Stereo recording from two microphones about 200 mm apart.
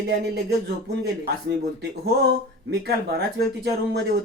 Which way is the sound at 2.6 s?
55° right (ahead or behind).